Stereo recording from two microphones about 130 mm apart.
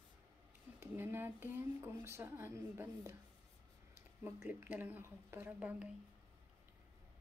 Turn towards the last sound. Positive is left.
turn(degrees=-10)  # may be behind; listen again after turning